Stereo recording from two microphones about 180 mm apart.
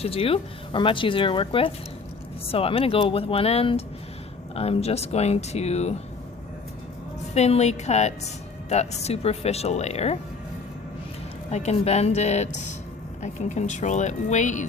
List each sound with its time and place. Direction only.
0.0 s speech: 30° left (ahead or behind)
7.3 s speech: 35° left (ahead or behind)
11.5 s speech: 35° left (ahead or behind)